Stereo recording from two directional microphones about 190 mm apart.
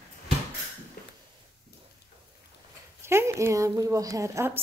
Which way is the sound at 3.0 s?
15° right (ahead or behind).